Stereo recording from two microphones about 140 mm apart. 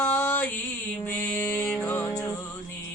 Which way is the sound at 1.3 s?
5° left (ahead or behind).